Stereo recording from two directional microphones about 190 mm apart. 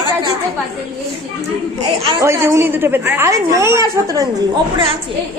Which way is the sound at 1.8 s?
20° right (ahead or behind).